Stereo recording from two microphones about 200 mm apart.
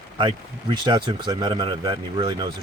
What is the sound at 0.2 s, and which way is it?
Speech, 25° right (ahead or behind).